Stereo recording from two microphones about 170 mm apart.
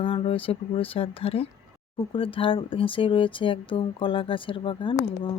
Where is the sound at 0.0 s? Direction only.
30° left (ahead or behind).